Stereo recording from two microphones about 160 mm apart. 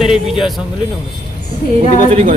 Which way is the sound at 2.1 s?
50° right (ahead or behind).